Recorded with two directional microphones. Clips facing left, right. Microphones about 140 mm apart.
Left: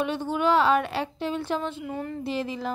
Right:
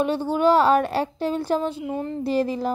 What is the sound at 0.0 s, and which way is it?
A woman's voice, 35° right (ahead or behind).